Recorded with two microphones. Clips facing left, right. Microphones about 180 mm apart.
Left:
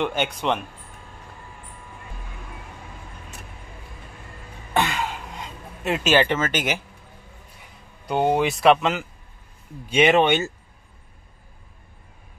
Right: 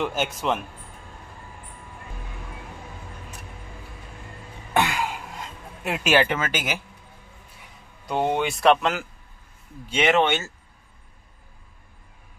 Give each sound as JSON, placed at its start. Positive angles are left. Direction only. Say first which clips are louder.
{"t": 0.0, "sound": "speech", "louder": "left 1 dB", "side_deg": 0}
{"t": 4.7, "sound": "throat clearing", "louder": "even", "side_deg": -10}
{"t": 8.1, "sound": "speech", "louder": "left 3 dB", "side_deg": 0}
{"t": 9.8, "sound": "speech", "louder": "left 3 dB", "side_deg": 15}